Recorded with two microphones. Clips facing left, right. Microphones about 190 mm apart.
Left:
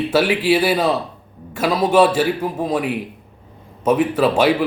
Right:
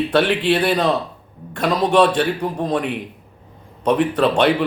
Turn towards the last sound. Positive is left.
turn(degrees=5)  # may be behind; listen again after turning